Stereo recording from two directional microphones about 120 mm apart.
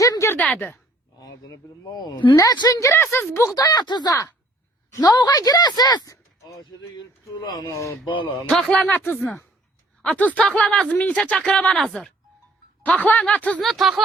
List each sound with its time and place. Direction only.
0.0 s a sound: 25° left (ahead or behind)
0.3 s speech: 10° left (ahead or behind)
1.2 s speech: 35° left (ahead or behind)
3.5 s speech: 35° left (ahead or behind)
8.2 s speech: 5° left (ahead or behind)